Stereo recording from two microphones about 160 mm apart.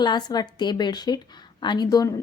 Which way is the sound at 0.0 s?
25° left (ahead or behind).